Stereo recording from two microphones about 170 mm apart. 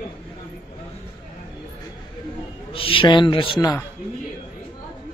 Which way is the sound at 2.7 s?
30° left (ahead or behind).